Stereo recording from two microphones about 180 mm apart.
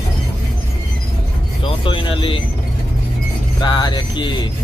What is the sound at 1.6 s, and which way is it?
Speech, 30° left (ahead or behind).